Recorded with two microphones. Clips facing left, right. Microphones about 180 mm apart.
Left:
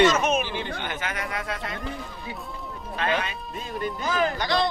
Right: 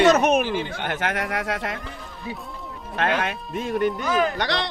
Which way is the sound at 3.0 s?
75° right (ahead or behind).